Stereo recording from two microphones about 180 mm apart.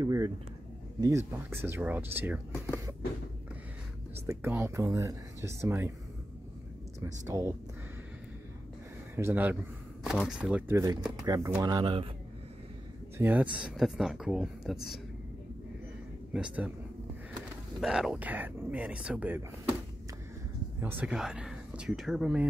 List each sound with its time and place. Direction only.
0.0 s speech: 20° right (ahead or behind)
2.5 s speech: 15° left (ahead or behind)
4.3 s speech: 10° right (ahead or behind)
7.2 s speech: 15° right (ahead or behind)
9.1 s speech: 10° right (ahead or behind)
11.2 s speech: 20° right (ahead or behind)
13.2 s speech: 10° right (ahead or behind)
16.3 s speech: 5° right (ahead or behind)
17.7 s speech: centre (ahead or behind)
20.8 s speech: 10° right (ahead or behind)